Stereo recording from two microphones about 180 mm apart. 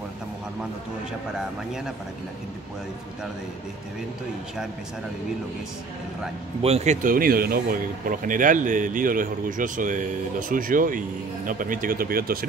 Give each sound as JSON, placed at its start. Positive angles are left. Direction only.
{"t": 6.6, "sound": "speech", "side_deg": -35}